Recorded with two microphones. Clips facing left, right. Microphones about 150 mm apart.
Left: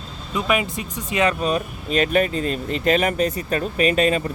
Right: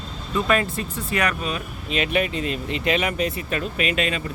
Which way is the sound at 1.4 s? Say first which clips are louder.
Left 6 dB; 40° left (ahead or behind).